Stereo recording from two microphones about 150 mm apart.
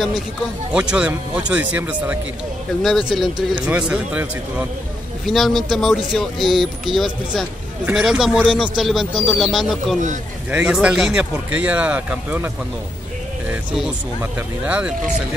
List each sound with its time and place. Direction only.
0.7 s speech: 10° right (ahead or behind)
5.2 s speech: centre (ahead or behind)
14.6 s speech: 10° right (ahead or behind)